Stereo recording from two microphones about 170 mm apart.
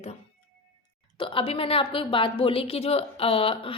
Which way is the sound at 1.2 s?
30° left (ahead or behind).